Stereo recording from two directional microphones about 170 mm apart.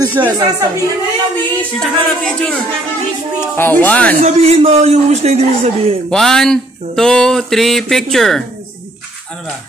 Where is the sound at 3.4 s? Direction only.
10° left (ahead or behind).